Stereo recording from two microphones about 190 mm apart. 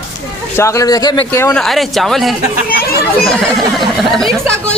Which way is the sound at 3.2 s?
Centre (ahead or behind).